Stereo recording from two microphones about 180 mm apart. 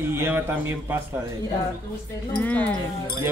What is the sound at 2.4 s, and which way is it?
Speech, 10° left (ahead or behind).